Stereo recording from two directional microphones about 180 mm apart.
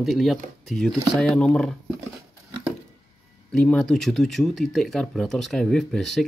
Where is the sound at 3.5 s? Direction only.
5° left (ahead or behind).